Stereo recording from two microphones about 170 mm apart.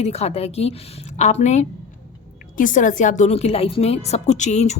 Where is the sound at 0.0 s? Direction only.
40° left (ahead or behind).